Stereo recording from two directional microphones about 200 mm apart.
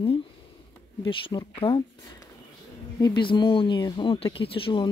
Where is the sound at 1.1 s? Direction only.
25° left (ahead or behind).